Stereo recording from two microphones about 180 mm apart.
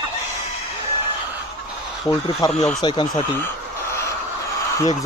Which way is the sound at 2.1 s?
25° left (ahead or behind).